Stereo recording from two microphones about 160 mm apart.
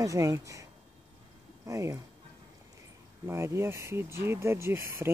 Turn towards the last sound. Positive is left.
turn(degrees=-15)  # may be behind; listen again after turning